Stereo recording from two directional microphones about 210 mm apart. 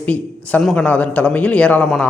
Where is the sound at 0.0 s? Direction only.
5° left (ahead or behind).